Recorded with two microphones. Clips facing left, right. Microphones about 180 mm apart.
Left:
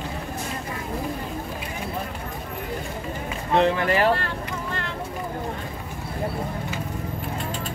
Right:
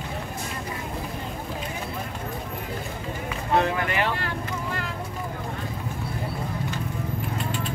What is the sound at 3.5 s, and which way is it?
Speech, 30° left (ahead or behind).